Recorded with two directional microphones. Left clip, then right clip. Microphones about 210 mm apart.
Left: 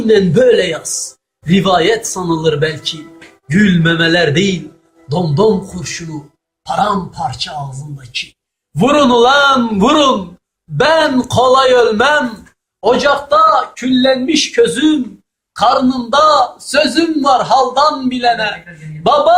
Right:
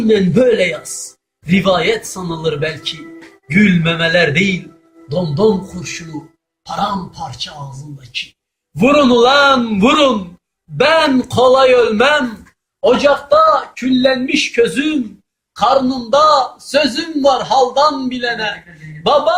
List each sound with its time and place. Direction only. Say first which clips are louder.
0.1 s a man's voice: left 3 dB; 10° left (ahead or behind)
6.7 s speech: left 5 dB; 20° left (ahead or behind)
8.8 s a man's voice: left 1 dB; 15° left (ahead or behind)